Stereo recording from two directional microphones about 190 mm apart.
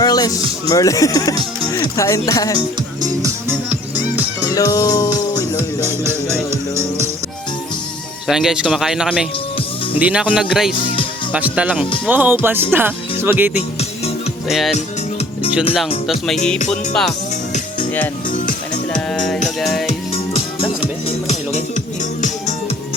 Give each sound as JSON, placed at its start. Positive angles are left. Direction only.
{"t": 0.0, "sound": "speech", "side_deg": 20}
{"t": 2.6, "sound": "speech", "side_deg": -20}
{"t": 4.4, "sound": "music", "side_deg": 20}
{"t": 5.8, "sound": "music", "side_deg": -15}
{"t": 8.3, "sound": "speech", "side_deg": 0}
{"t": 11.3, "sound": "music", "side_deg": -5}
{"t": 12.7, "sound": "speech", "side_deg": -10}
{"t": 16.0, "sound": "speech", "side_deg": 0}
{"t": 17.1, "sound": "music", "side_deg": 40}
{"t": 18.9, "sound": "music", "side_deg": 5}
{"t": 19.9, "sound": "music", "side_deg": 30}